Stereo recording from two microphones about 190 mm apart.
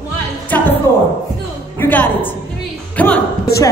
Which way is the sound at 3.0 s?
10° left (ahead or behind).